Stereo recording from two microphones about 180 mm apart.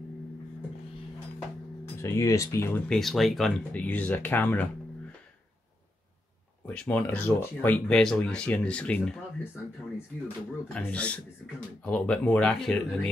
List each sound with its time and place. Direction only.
2.0 s speech: 15° left (ahead or behind)
3.0 s speech: centre (ahead or behind)
6.6 s speech: 10° left (ahead or behind)
10.7 s speech: 5° left (ahead or behind)